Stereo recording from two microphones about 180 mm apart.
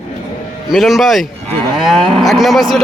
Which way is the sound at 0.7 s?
Centre (ahead or behind).